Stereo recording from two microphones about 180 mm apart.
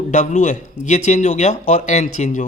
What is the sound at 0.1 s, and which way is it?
Speech, 40° left (ahead or behind).